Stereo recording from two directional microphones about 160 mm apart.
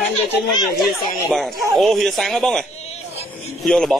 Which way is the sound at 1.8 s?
Centre (ahead or behind).